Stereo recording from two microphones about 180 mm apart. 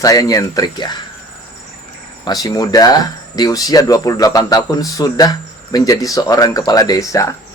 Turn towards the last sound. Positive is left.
turn(degrees=20)  # may be behind; listen again after turning